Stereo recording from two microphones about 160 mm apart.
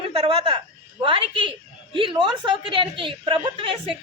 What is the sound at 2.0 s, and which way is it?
A woman's voice, 30° right (ahead or behind).